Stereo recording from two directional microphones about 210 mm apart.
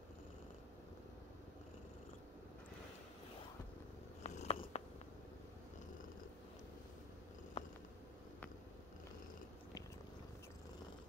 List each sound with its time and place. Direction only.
4.2 s purr: 30° left (ahead or behind)
7.6 s purr: 30° left (ahead or behind)